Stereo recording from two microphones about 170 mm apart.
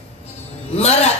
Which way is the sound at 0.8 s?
40° left (ahead or behind).